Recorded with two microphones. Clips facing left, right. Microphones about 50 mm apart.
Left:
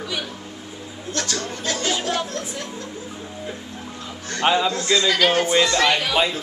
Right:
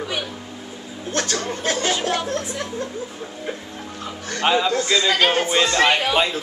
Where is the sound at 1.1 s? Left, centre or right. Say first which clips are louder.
Right 3 dB; right.